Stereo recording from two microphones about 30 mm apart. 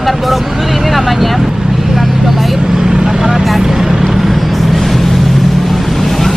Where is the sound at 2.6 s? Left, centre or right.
Right.